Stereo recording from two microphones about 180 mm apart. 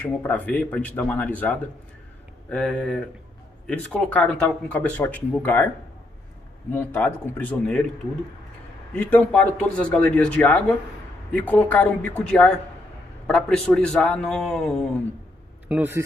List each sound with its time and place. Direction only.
0.0 s a man's voice: 10° left (ahead or behind)
6.7 s a man's voice: 10° left (ahead or behind)
8.9 s a man's voice: 10° left (ahead or behind)
15.7 s a man's voice: 10° right (ahead or behind)